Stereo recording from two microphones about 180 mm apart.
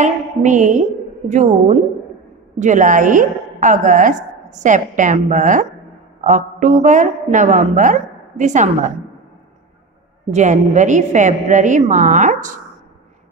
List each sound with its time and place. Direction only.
0.0 s a woman's voice: 40° right (ahead or behind)
10.3 s a woman's voice: 40° right (ahead or behind)